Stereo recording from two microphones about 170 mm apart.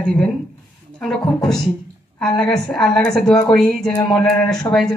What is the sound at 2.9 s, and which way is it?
A woman's voice, 5° left (ahead or behind).